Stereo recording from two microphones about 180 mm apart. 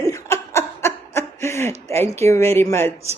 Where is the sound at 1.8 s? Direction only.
15° left (ahead or behind).